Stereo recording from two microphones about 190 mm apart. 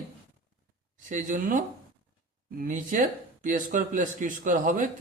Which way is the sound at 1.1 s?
40° right (ahead or behind).